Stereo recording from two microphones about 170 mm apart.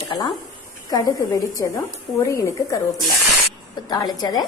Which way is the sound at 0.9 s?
20° left (ahead or behind).